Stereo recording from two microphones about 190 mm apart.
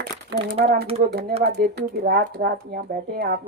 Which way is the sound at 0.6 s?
55° right (ahead or behind).